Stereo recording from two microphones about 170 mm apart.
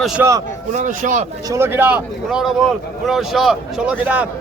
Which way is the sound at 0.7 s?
50° right (ahead or behind).